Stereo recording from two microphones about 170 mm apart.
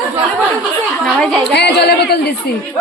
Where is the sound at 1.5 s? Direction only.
80° left.